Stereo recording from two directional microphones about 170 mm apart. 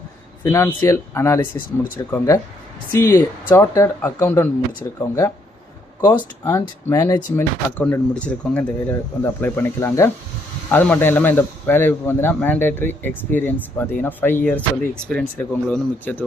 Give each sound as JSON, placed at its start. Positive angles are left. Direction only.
{"t": 0.4, "sound": "a man's voice", "side_deg": 15}
{"t": 6.4, "sound": "a man's voice", "side_deg": 20}